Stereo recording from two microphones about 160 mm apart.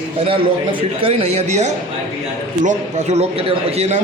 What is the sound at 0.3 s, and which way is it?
A man's voice, 35° right (ahead or behind).